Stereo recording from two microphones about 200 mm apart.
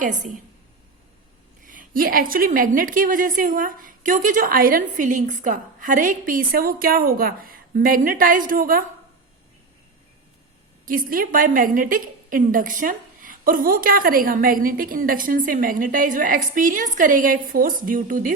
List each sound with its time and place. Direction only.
0.0 s a woman's voice: 40° right (ahead or behind)
1.6 s a woman's voice: 40° right (ahead or behind)
10.8 s a woman's voice: 45° right (ahead or behind)